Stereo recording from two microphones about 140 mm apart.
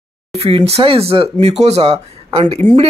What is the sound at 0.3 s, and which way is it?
Speech, 45° right (ahead or behind).